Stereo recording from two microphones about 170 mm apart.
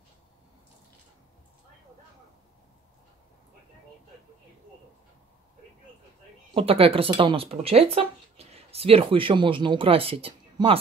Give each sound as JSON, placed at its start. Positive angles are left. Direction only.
{"t": 6.5, "sound": "speech", "side_deg": -35}